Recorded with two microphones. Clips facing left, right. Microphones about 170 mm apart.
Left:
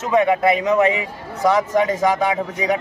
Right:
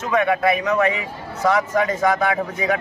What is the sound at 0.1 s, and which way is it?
A man's voice, 20° left (ahead or behind).